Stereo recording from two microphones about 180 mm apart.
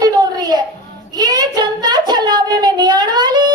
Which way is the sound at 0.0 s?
20° right (ahead or behind).